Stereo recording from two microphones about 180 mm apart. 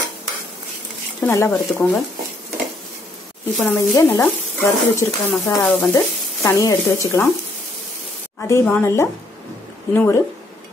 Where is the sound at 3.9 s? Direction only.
15° left (ahead or behind).